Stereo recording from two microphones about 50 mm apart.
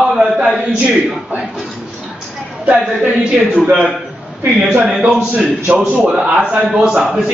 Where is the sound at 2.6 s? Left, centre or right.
Right.